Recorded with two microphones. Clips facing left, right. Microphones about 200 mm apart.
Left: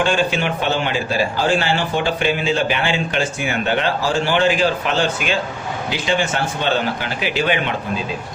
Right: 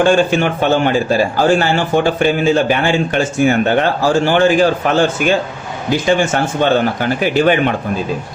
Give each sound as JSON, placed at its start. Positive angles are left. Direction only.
{"t": 0.1, "sound": "speech", "side_deg": -45}